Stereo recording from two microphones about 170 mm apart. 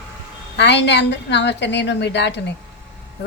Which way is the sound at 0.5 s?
90° left.